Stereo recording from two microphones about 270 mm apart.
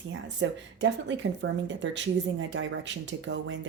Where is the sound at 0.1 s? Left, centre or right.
Right.